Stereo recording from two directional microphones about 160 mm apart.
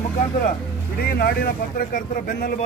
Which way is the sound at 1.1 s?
70° left (ahead or behind).